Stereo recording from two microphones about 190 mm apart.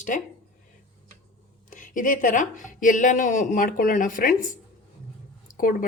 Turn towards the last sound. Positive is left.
turn(degrees=45)  # may be behind; listen again after turning